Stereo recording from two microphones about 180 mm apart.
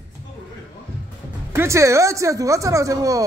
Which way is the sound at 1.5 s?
15° right (ahead or behind).